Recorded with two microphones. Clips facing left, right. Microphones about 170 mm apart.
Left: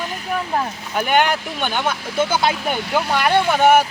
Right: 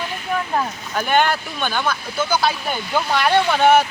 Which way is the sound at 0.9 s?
10° left (ahead or behind).